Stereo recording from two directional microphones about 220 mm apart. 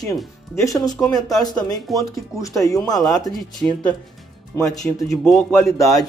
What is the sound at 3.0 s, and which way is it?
Speech, centre (ahead or behind).